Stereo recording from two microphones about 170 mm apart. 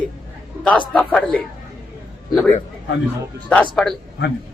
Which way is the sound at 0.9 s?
10° left (ahead or behind).